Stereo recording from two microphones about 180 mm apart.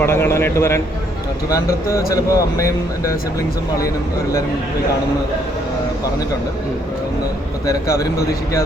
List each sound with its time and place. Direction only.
0.0 s a man's voice: 15° left (ahead or behind)
2.1 s speech: 20° left (ahead or behind)
7.7 s speech: 20° left (ahead or behind)